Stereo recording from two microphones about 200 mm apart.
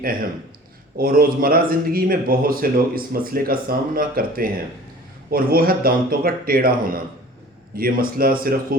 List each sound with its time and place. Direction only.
0.0 s speech: 45° right (ahead or behind)